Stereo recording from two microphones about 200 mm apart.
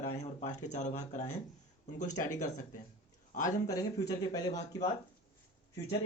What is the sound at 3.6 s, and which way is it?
Speech, 15° left (ahead or behind).